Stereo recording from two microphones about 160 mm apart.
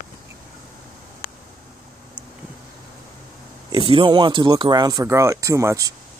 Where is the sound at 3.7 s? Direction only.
35° right (ahead or behind).